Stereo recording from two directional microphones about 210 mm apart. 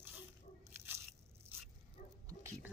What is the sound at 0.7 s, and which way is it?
Biting, 10° right (ahead or behind).